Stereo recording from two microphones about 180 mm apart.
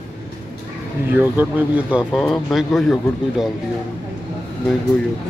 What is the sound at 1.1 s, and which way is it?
Speech, 10° right (ahead or behind).